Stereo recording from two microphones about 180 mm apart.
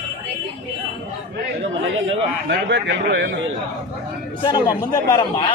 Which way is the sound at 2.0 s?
75° right (ahead or behind).